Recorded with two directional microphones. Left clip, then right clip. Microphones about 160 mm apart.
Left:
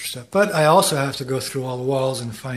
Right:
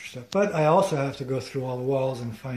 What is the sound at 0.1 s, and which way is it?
Speech, 10° left (ahead or behind).